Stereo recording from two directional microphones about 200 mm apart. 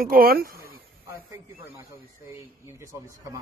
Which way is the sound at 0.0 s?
45° right (ahead or behind).